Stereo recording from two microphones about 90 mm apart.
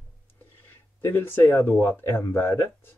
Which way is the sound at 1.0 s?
25° left (ahead or behind).